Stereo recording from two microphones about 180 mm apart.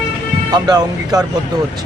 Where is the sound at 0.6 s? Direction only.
20° right (ahead or behind).